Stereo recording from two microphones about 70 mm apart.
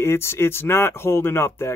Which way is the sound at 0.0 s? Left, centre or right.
Left.